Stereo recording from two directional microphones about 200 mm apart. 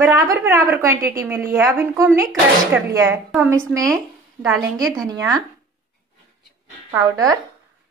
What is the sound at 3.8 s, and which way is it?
Speech, centre (ahead or behind).